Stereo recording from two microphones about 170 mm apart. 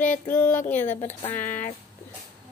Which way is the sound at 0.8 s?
40° left (ahead or behind).